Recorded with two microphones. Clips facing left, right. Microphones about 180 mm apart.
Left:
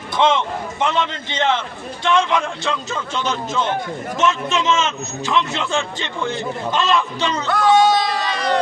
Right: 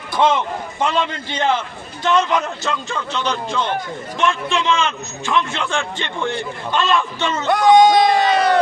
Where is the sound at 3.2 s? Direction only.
5° left (ahead or behind).